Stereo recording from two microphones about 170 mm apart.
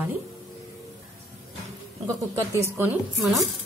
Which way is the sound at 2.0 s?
20° right (ahead or behind).